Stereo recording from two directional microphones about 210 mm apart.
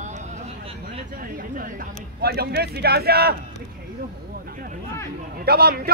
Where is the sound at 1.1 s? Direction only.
40° right (ahead or behind).